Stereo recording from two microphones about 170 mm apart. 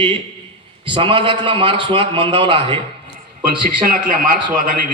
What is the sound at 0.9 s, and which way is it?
A man's voice, 30° right (ahead or behind).